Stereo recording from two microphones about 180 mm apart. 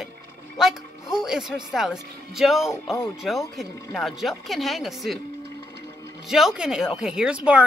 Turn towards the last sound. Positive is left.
turn(degrees=-5)  # may be behind; listen again after turning